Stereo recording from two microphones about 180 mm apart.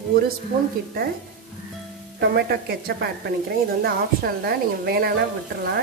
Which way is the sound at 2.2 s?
60° right (ahead or behind).